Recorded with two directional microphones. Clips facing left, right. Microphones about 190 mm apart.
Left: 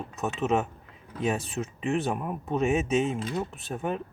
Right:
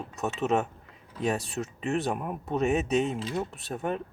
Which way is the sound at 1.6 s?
40° right (ahead or behind).